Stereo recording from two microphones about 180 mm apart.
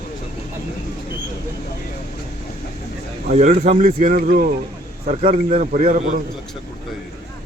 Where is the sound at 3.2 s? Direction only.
45° right (ahead or behind).